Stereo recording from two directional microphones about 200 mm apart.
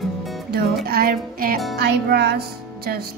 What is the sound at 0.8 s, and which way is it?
Music, 50° right (ahead or behind).